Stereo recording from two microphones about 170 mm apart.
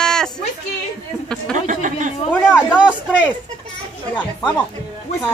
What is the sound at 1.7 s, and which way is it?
Speech, 50° right (ahead or behind).